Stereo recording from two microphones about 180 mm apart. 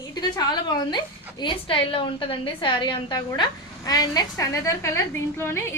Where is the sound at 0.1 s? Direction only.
25° left (ahead or behind).